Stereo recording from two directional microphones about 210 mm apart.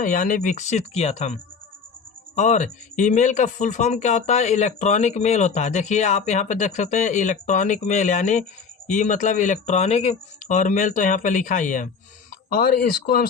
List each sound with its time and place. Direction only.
0.0 s speech: 40° left (ahead or behind)